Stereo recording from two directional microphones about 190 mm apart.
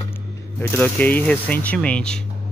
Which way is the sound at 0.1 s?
10° left (ahead or behind).